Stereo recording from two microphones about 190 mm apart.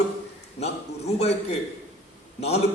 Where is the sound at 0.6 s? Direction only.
35° left (ahead or behind).